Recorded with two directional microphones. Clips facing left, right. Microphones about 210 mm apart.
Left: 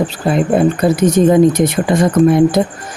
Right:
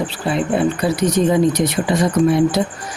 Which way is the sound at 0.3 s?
45° left (ahead or behind).